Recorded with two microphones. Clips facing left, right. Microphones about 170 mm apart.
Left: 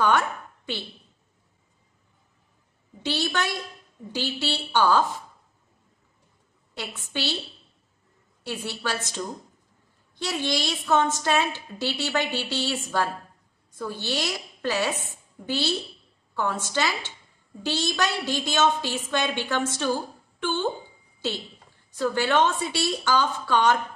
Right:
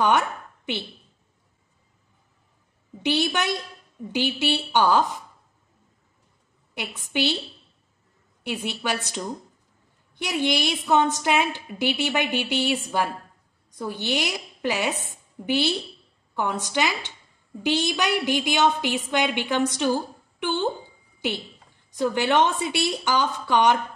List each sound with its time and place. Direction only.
3.0 s a woman's voice: 15° right (ahead or behind)
6.7 s a sound: 15° right (ahead or behind)
7.1 s a woman's voice: 15° right (ahead or behind)
8.5 s a woman's voice: 15° right (ahead or behind)
21.9 s a woman's voice: 20° right (ahead or behind)